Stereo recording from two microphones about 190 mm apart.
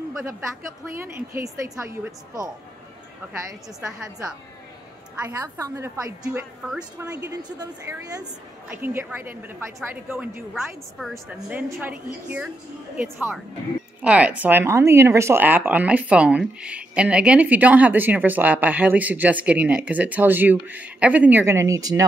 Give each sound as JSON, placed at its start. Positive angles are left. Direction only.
{"t": 1.0, "sound": "speech", "side_deg": -15}
{"t": 5.2, "sound": "speech", "side_deg": -15}
{"t": 6.2, "sound": "a woman's voice", "side_deg": -5}
{"t": 7.2, "sound": "speech", "side_deg": -15}